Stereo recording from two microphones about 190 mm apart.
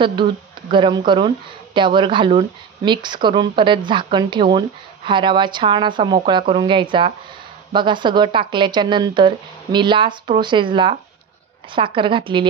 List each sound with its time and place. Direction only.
0.0 s speech: 25° right (ahead or behind)